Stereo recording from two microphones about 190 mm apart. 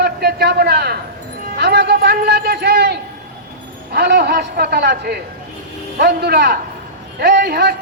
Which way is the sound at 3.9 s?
60° right (ahead or behind).